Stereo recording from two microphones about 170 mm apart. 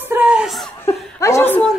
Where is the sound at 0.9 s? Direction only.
20° left (ahead or behind).